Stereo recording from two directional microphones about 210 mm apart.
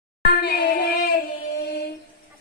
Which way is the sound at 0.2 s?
50° left (ahead or behind).